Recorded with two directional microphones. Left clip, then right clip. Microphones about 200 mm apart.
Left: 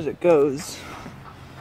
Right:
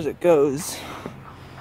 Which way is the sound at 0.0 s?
30° right (ahead or behind).